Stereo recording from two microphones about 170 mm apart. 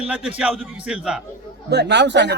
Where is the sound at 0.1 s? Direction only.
10° right (ahead or behind).